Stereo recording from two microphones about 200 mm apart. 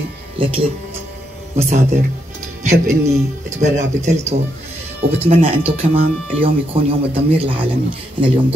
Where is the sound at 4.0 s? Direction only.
35° right (ahead or behind).